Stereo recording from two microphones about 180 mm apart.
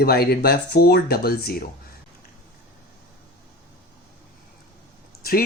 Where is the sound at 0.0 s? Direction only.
60° left (ahead or behind).